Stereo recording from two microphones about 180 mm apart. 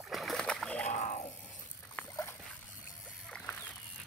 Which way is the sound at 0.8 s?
40° left (ahead or behind).